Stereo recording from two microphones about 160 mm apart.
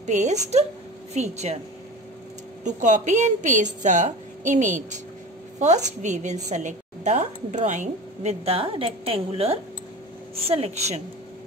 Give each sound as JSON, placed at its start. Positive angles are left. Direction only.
{"t": 0.0, "sound": "a woman's voice", "side_deg": -50}
{"t": 2.6, "sound": "a woman's voice", "side_deg": -50}
{"t": 6.0, "sound": "a woman's voice", "side_deg": -50}